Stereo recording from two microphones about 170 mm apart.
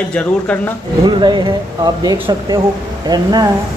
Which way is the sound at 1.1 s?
25° right (ahead or behind).